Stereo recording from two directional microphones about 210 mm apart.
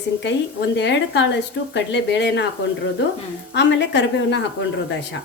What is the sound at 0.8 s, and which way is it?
A woman's voice, 55° left (ahead or behind).